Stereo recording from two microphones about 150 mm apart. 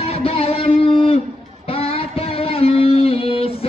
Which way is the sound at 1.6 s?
40° left (ahead or behind).